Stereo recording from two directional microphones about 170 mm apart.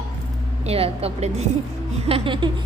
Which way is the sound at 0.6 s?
35° right (ahead or behind).